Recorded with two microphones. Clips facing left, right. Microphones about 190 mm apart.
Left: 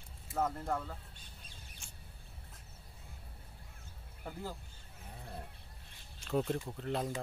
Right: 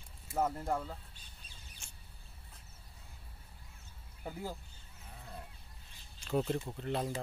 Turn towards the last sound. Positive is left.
turn(degrees=0)  # may be behind; listen again after turning